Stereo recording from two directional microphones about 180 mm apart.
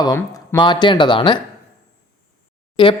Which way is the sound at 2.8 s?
25° left (ahead or behind).